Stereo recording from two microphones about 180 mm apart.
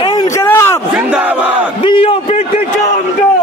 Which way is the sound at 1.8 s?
30° left (ahead or behind).